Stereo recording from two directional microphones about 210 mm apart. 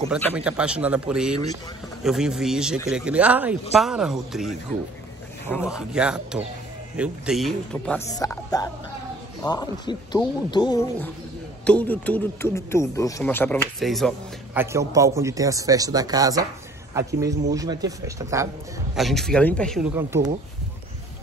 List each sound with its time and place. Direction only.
0.3 s speech: 5° right (ahead or behind)
5.7 s speech: 5° right (ahead or behind)
8.1 s speech: 15° left (ahead or behind); by 14.6 s centre (ahead or behind)
14.6 s speech: 15° right (ahead or behind)
18.9 s speech: centre (ahead or behind)
19.9 s speech: 10° right (ahead or behind)